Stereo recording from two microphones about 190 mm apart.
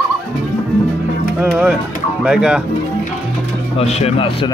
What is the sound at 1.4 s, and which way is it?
Speech, 5° right (ahead or behind).